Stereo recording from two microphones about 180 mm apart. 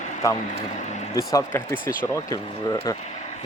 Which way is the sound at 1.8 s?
50° left (ahead or behind).